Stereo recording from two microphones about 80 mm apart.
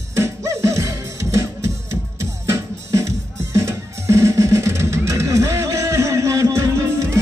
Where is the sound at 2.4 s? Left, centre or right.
Right.